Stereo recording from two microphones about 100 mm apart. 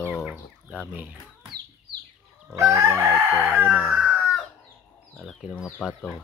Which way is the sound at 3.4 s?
20° right (ahead or behind).